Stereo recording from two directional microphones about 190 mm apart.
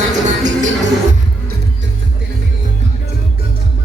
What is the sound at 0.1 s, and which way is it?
Music, 40° right (ahead or behind).